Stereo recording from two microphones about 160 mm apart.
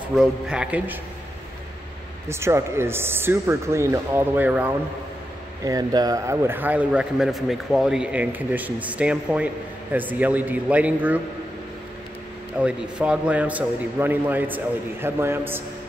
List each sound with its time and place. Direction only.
0.1 s a man's voice: 5° right (ahead or behind)
2.2 s a man's voice: 15° right (ahead or behind)
5.7 s a man's voice: 25° right (ahead or behind)
12.5 s a man's voice: 5° right (ahead or behind)